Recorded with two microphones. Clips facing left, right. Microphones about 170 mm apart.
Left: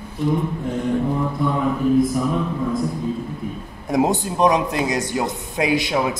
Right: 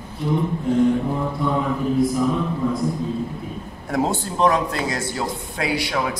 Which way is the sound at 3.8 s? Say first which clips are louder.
Left 3 dB; 15° left (ahead or behind).